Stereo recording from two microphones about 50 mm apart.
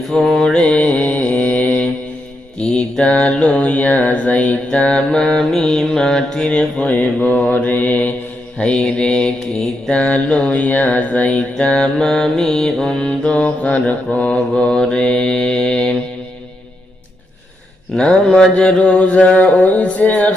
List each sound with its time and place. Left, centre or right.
0.1 s mantra: centre; by 1.8 s left
2.6 s mantra: left
6.9 s mantra: left
8.5 s mantra: left
11.6 s mantra: centre
17.9 s mantra: centre